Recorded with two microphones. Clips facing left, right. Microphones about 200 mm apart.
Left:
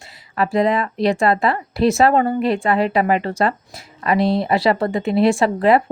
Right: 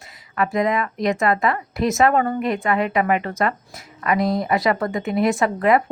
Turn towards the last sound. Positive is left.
turn(degrees=30)  # may be behind; listen again after turning